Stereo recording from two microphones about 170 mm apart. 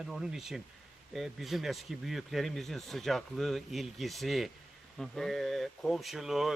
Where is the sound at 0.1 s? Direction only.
5° right (ahead or behind).